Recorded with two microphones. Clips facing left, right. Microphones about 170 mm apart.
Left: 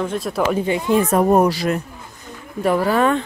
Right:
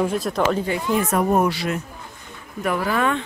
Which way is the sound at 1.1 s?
35° left (ahead or behind).